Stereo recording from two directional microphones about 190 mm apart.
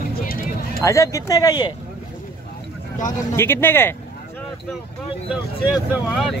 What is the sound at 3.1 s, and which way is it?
Speech, 15° left (ahead or behind).